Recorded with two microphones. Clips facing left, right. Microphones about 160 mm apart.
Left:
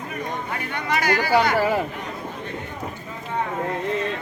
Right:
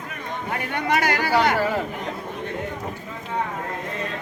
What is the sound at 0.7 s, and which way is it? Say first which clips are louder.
Speech: even; 60° right (ahead or behind).